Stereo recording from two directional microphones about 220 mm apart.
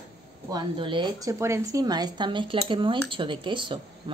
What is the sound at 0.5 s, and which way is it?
A woman's voice, 20° right (ahead or behind).